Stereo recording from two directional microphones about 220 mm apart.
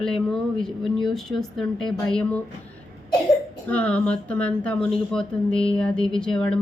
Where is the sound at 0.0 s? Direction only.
5° left (ahead or behind).